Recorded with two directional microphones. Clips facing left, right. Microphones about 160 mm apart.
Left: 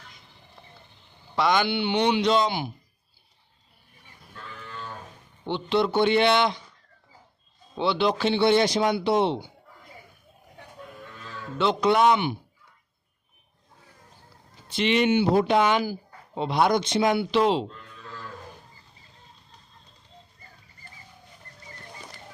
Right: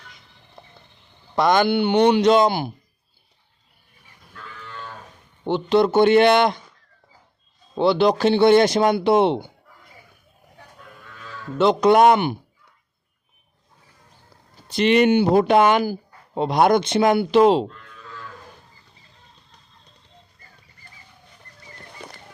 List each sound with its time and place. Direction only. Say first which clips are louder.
0.6 s a sound: right 5 dB; 45° right (ahead or behind)
1.4 s speech: right 6 dB; 50° right (ahead or behind)
5.5 s speech: right 6 dB; 45° right (ahead or behind)
7.8 s speech: right 6 dB; 40° right (ahead or behind); by 9.5 s 55° right (ahead or behind)
11.5 s speech: right 6 dB; 45° right (ahead or behind)
14.7 s speech: right 6 dB; 45° right (ahead or behind)
22.0 s a sound: right 5 dB; 65° right (ahead or behind)